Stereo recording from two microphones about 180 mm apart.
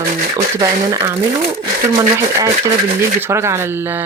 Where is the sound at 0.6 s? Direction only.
20° right (ahead or behind).